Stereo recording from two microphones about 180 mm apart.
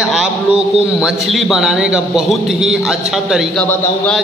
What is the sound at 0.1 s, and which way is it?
A man's voice, 5° right (ahead or behind).